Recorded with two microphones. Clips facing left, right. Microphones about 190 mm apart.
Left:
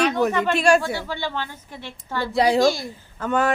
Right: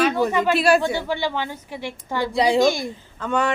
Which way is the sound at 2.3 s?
Centre (ahead or behind).